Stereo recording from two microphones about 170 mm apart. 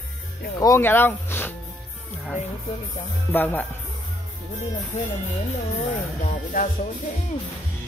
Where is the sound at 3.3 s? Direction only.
10° left (ahead or behind).